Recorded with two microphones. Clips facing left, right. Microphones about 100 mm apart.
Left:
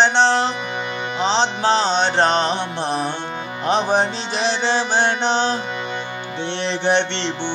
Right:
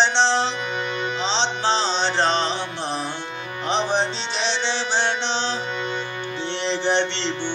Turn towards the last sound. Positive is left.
turn(degrees=60)  # may be behind; listen again after turning